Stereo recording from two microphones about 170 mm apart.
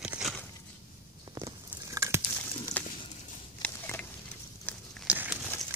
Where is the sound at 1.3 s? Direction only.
20° right (ahead or behind).